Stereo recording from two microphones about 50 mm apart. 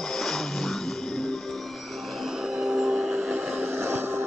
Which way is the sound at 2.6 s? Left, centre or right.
Centre.